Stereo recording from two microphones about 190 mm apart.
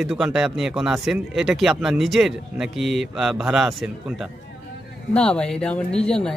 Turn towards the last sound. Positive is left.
turn(degrees=5)  # may be behind; listen again after turning